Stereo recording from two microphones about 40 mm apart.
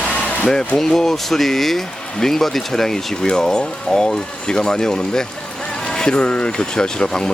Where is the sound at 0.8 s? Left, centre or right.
Centre.